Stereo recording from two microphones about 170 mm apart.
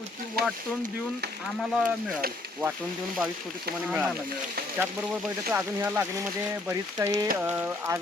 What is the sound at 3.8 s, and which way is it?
Speech, 5° right (ahead or behind).